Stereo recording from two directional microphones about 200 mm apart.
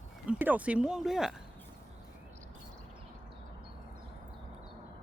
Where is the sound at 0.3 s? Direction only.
10° right (ahead or behind).